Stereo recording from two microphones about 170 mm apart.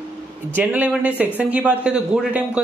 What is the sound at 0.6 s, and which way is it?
Speech, 10° right (ahead or behind).